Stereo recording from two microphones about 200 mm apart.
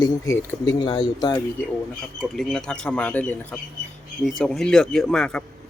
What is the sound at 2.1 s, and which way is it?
Speech, centre (ahead or behind).